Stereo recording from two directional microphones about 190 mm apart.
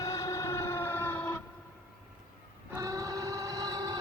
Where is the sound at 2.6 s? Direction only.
15° right (ahead or behind).